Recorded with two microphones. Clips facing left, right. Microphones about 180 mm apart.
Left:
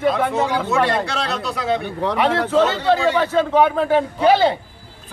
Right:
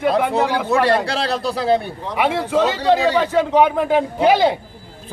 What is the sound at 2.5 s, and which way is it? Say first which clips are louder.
A man's voice: right 2 dB; 15° right (ahead or behind).